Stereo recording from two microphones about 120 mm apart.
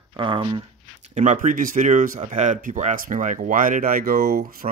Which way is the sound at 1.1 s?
80° right.